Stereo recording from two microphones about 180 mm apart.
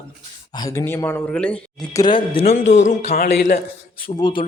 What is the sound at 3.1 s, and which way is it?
Speech, 55° left (ahead or behind).